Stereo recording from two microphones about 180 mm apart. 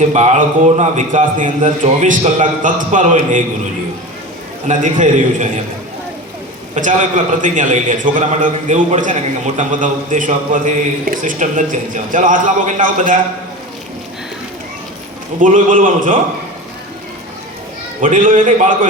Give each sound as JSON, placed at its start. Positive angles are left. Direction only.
{"t": 0.1, "sound": "a man's voice", "side_deg": -40}
{"t": 4.7, "sound": "a man's voice", "side_deg": -40}
{"t": 6.8, "sound": "a man's voice", "side_deg": -45}
{"t": 15.4, "sound": "a man's voice", "side_deg": -45}
{"t": 18.0, "sound": "a man's voice", "side_deg": -45}